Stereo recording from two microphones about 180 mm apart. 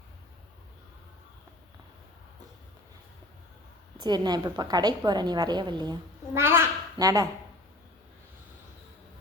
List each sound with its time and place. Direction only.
4.0 s a woman's voice: 25° right (ahead or behind)